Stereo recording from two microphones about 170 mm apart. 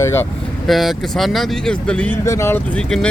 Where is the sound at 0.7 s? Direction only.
Centre (ahead or behind).